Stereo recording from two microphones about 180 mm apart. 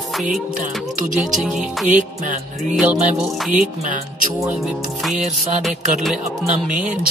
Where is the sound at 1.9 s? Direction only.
45° right (ahead or behind).